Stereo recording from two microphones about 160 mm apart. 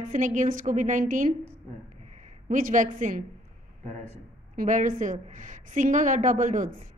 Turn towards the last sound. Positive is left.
turn(degrees=-55)  # may be behind; listen again after turning